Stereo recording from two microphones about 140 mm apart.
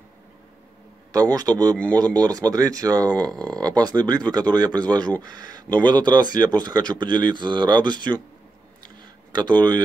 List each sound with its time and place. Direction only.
1.1 s speech: 25° right (ahead or behind)
9.3 s speech: 30° right (ahead or behind)